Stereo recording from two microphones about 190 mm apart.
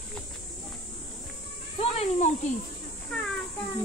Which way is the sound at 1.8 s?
35° left (ahead or behind).